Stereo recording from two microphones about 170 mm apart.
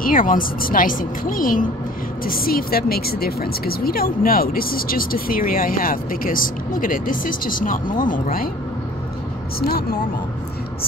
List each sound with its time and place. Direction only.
0.0 s a woman's voice: 55° left (ahead or behind)
9.6 s speech: 70° left (ahead or behind)